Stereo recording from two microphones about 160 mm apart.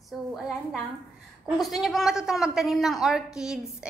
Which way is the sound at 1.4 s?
Centre (ahead or behind).